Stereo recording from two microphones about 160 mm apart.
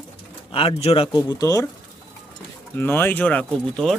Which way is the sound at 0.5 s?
35° left (ahead or behind).